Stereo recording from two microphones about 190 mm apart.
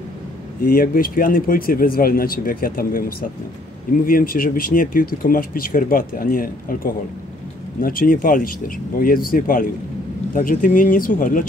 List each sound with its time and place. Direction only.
0.7 s speech: 50° left (ahead or behind)